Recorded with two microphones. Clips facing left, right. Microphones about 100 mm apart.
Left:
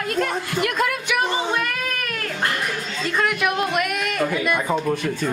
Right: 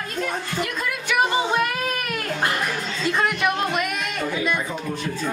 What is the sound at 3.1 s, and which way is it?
Music, centre (ahead or behind).